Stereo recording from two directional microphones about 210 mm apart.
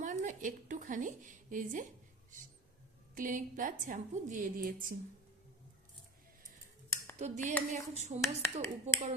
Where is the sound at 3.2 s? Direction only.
40° right (ahead or behind).